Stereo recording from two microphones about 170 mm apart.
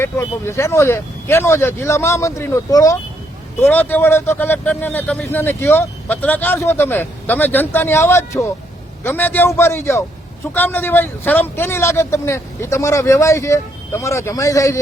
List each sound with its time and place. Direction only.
0.0 s speech: 15° left (ahead or behind)